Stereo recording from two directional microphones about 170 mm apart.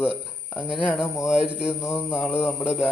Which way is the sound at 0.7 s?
10° left (ahead or behind).